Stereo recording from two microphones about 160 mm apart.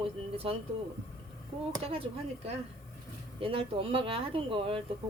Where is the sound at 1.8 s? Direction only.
35° right (ahead or behind).